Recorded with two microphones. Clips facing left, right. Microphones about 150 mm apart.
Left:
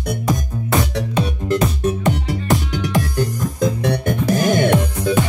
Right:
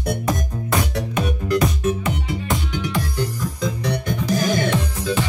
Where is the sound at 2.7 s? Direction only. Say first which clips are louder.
Left 4 dB; 45° left (ahead or behind).